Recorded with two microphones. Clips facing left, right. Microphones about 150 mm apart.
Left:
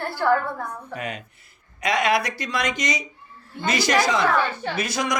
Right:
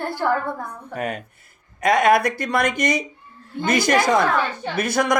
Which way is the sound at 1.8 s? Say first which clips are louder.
Right 5 dB; 50° right (ahead or behind).